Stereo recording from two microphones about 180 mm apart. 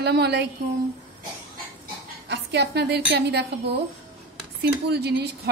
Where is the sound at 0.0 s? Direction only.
65° right (ahead or behind).